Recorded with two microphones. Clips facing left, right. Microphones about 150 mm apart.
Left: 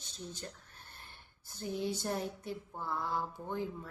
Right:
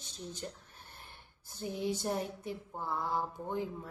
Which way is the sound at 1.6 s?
15° right (ahead or behind).